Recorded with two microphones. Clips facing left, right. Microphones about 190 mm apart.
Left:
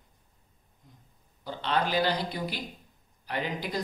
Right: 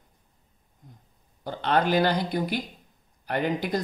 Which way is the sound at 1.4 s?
50° right (ahead or behind).